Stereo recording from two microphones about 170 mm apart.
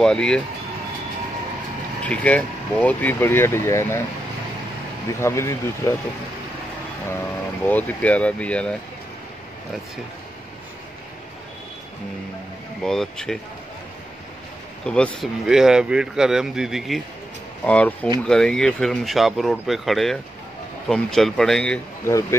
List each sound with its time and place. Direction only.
0.0 s speech: 5° left (ahead or behind)
2.0 s speech: 10° left (ahead or behind)
5.2 s speech: 15° left (ahead or behind)
7.6 s speech: 10° left (ahead or behind)
12.8 s speech: 5° left (ahead or behind)
14.9 s speech: 5° left (ahead or behind)
22.0 s speech: 15° left (ahead or behind)